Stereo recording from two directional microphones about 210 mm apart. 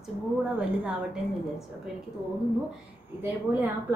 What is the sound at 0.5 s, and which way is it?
Speech, 5° right (ahead or behind).